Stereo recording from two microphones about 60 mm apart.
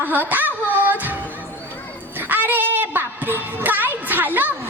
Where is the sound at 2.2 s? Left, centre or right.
Right.